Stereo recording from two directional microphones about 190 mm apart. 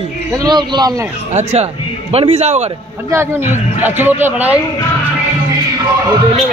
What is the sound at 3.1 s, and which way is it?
A man's voice, 10° right (ahead or behind).